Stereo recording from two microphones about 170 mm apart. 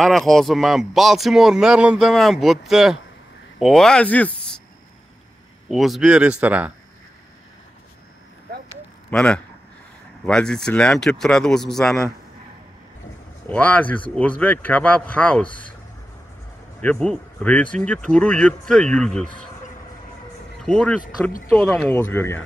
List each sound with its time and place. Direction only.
0.0 s speech: centre (ahead or behind)
5.7 s speech: centre (ahead or behind)
9.1 s speech: 5° left (ahead or behind)
13.5 s speech: 10° left (ahead or behind)
16.8 s speech: 5° left (ahead or behind)
20.6 s speech: 5° left (ahead or behind)
21.0 s speech: 55° left (ahead or behind)
21.5 s speech: 5° left (ahead or behind)